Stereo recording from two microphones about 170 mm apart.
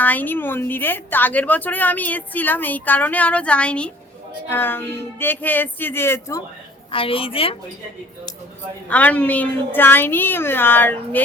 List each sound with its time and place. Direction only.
0.0 s a woman's voice: 10° left (ahead or behind)
6.9 s a woman's voice: 30° left (ahead or behind)
8.9 s a woman's voice: 10° left (ahead or behind)